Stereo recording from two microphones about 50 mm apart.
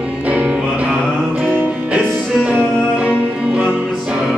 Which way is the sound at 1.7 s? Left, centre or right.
Right.